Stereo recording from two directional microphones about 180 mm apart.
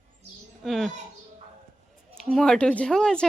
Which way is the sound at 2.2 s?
Centre (ahead or behind).